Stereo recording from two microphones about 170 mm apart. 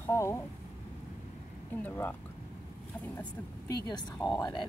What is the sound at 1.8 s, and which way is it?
Speech, 10° left (ahead or behind).